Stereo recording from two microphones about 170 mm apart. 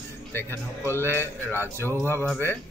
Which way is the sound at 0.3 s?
10° left (ahead or behind).